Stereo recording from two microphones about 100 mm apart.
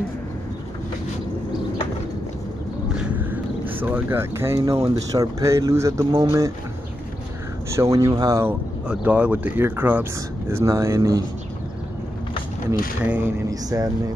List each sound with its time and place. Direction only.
3.2 s a sound: 20° right (ahead or behind)
3.8 s speech: 20° right (ahead or behind)
4.6 s speech: 35° right (ahead or behind)
7.7 s speech: 30° right (ahead or behind)
8.8 s speech: 10° right (ahead or behind)
10.5 s speech: 30° right (ahead or behind)
13.0 s speech: 15° right (ahead or behind)
13.5 s speech: 35° right (ahead or behind)